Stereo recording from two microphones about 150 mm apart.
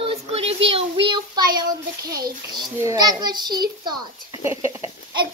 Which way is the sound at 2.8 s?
20° right (ahead or behind).